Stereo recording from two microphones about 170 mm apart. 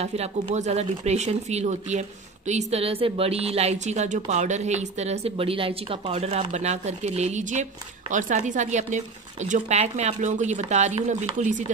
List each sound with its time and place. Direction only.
0.0 s speech: 40° right (ahead or behind)